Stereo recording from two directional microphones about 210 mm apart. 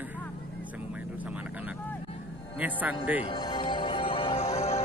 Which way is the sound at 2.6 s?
5° right (ahead or behind).